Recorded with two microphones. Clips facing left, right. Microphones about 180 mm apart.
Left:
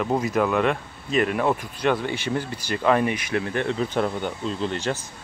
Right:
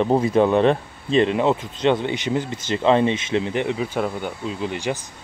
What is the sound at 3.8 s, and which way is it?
Speech, 5° right (ahead or behind).